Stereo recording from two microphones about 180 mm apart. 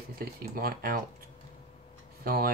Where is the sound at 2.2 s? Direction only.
55° right (ahead or behind).